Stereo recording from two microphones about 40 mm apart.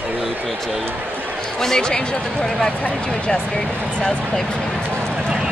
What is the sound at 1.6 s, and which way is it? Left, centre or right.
Speech, centre.